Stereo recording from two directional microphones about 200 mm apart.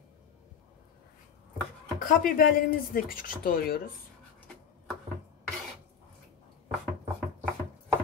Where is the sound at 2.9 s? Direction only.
45° left (ahead or behind).